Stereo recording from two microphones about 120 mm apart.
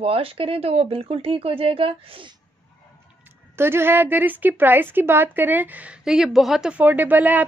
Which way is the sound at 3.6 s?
20° right (ahead or behind).